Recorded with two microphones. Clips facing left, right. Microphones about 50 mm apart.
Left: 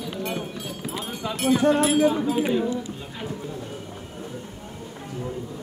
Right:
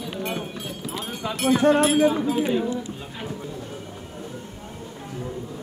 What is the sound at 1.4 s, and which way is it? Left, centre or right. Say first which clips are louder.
Speech: right 1 dB; right.